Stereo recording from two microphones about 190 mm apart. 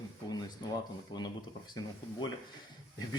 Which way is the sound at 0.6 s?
20° left (ahead or behind).